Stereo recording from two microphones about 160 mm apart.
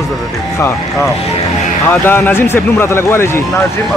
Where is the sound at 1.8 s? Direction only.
15° left (ahead or behind).